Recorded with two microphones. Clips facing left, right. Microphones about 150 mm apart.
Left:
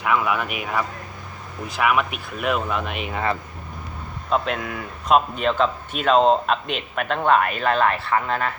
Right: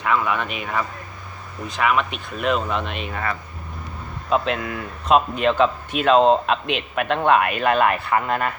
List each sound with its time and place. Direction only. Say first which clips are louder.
0.0 s speech: even; 10° left (ahead or behind)
4.3 s speech: right 2 dB; centre (ahead or behind)